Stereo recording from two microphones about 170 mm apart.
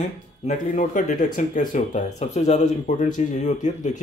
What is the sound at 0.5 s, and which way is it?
Speech, 45° left (ahead or behind).